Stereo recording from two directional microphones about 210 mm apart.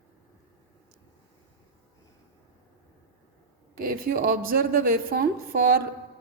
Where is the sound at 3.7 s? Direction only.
45° right (ahead or behind).